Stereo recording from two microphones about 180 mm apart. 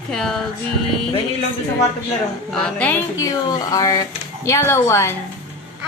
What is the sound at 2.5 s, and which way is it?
Speech, 5° left (ahead or behind).